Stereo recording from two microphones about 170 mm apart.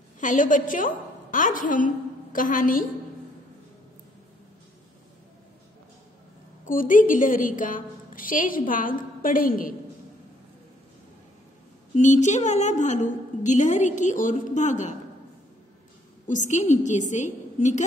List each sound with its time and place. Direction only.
0.2 s a woman's voice: 50° left (ahead or behind)
6.6 s a woman's voice: 55° left (ahead or behind)
11.9 s a woman's voice: 45° left (ahead or behind)
16.3 s a woman's voice: 45° left (ahead or behind)